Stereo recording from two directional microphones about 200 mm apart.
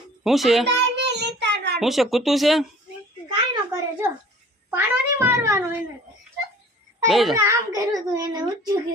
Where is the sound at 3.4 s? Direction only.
15° right (ahead or behind).